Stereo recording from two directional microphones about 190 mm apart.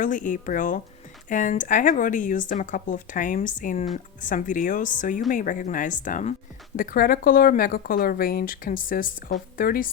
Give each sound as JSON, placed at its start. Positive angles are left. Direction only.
{"t": 0.0, "sound": "speech", "side_deg": 45}